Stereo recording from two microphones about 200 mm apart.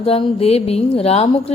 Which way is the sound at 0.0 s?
30° left (ahead or behind).